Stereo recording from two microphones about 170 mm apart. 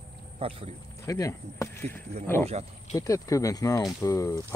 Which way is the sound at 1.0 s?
20° left (ahead or behind).